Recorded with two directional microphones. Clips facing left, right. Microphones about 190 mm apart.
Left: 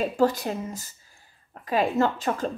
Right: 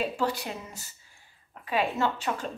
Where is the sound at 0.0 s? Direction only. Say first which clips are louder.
Left 6 dB; 45° left (ahead or behind).